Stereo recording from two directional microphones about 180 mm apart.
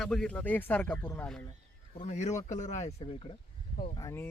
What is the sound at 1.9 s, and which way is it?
Speech, 40° left (ahead or behind).